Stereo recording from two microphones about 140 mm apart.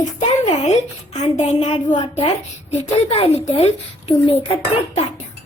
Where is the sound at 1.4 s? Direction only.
50° left (ahead or behind).